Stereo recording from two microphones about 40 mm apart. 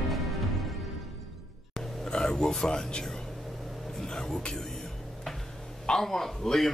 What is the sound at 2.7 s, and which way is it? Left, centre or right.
Music, left.